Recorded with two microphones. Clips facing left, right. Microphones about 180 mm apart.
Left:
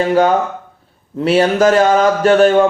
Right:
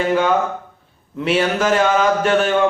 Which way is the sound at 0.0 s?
35° left (ahead or behind).